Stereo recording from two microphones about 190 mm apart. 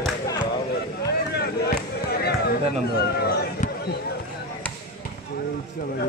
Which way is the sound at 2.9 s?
55° left (ahead or behind).